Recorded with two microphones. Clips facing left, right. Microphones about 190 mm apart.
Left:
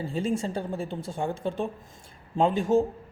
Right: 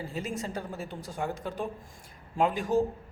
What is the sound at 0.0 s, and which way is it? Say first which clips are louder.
Speech: left 7 dB; 30° left (ahead or behind).